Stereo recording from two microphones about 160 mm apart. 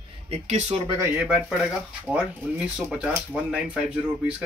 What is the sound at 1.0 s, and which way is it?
Speech, 10° right (ahead or behind).